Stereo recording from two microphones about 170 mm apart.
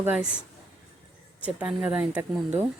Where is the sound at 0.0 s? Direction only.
10° right (ahead or behind).